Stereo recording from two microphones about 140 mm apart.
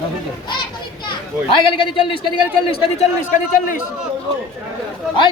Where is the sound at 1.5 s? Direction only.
40° left (ahead or behind).